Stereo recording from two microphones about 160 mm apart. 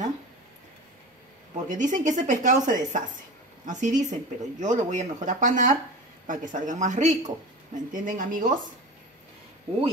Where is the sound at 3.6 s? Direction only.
50° right (ahead or behind).